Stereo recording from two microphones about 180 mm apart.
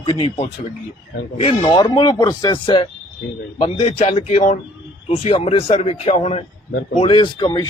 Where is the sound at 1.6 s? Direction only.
20° left (ahead or behind).